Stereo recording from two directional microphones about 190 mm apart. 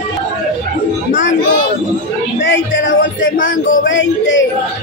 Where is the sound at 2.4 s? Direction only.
70° left (ahead or behind).